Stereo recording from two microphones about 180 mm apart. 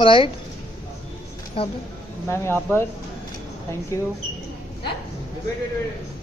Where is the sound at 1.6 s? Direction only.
30° left (ahead or behind).